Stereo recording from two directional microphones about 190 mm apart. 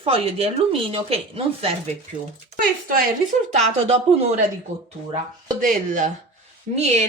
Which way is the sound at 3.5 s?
35° right (ahead or behind).